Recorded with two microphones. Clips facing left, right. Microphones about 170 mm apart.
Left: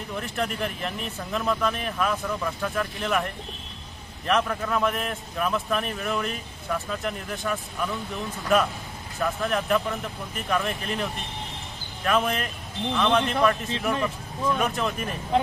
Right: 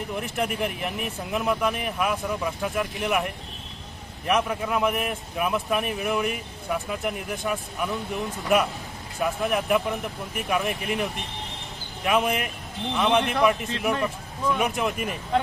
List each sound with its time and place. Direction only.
0.1 s a man's voice: 15° right (ahead or behind)